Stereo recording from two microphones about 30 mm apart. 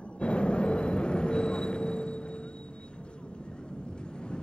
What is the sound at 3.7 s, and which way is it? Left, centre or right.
Vehicle, left.